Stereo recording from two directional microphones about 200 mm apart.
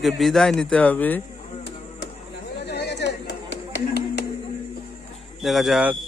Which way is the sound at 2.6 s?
55° left (ahead or behind).